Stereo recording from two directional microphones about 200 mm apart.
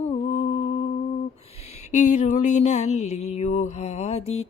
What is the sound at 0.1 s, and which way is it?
Humming, 35° left (ahead or behind).